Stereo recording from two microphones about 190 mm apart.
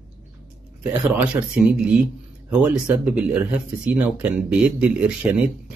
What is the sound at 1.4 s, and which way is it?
Speech, 15° right (ahead or behind).